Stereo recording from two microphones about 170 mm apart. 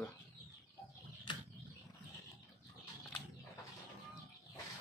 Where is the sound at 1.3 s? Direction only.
25° left (ahead or behind).